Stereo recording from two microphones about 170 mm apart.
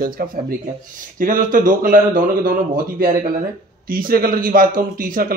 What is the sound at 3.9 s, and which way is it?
A man's voice, 60° right (ahead or behind).